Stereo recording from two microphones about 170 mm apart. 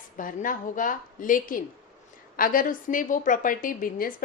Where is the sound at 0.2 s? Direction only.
50° left (ahead or behind).